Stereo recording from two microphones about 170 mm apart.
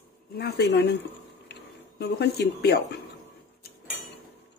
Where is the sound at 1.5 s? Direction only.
75° left (ahead or behind).